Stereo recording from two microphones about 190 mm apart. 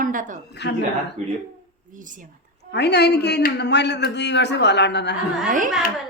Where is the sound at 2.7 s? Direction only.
60° left (ahead or behind).